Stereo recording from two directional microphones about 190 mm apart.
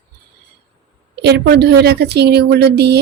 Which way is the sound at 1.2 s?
60° right (ahead or behind).